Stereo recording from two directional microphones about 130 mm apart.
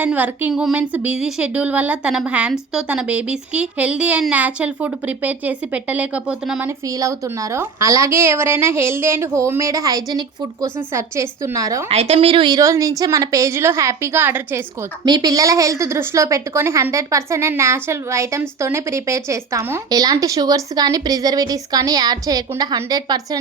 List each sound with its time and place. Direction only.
0.0 s a woman's voice: 10° right (ahead or behind)
6.7 s a woman's voice: 25° right (ahead or behind)
11.9 s a woman's voice: 50° right (ahead or behind); by 14.6 s 15° right (ahead or behind)
15.0 s a woman's voice: 30° right (ahead or behind)